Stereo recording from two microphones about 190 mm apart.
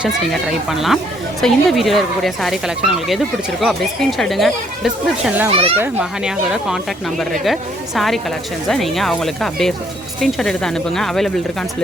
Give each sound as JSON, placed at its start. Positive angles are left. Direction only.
{"t": 0.0, "sound": "speech", "side_deg": 0}
{"t": 5.5, "sound": "a child's voice", "side_deg": -30}
{"t": 5.7, "sound": "speech", "side_deg": -10}